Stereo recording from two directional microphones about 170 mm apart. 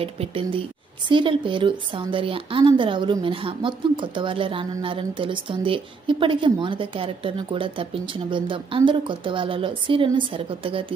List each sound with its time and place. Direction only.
0.0 s speech: 35° right (ahead or behind)